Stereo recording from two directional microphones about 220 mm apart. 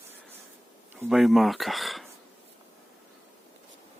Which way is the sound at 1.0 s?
Centre (ahead or behind).